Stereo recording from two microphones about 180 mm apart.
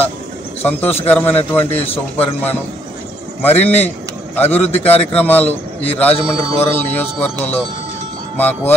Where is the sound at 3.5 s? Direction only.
35° left (ahead or behind).